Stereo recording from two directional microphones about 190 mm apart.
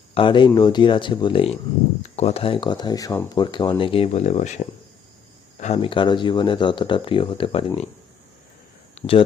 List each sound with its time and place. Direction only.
0.1 s speech: 25° left (ahead or behind)
9.0 s speech: 30° left (ahead or behind)